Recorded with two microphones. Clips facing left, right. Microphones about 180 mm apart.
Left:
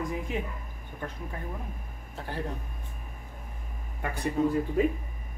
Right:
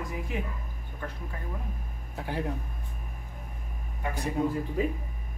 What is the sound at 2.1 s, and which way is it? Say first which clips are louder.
Speech: right 3 dB; 15° right (ahead or behind).